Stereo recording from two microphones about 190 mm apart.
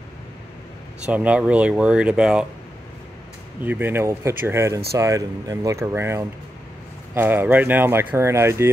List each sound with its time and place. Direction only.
1.0 s speech: 5° right (ahead or behind)
3.6 s speech: 10° right (ahead or behind)